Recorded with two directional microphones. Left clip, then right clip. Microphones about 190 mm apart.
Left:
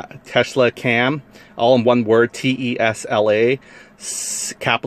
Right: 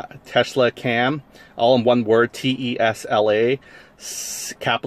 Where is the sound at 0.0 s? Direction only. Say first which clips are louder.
Left 1 dB; 20° left (ahead or behind).